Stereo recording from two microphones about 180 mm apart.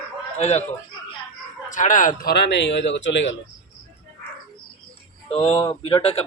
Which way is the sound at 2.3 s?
70° left (ahead or behind).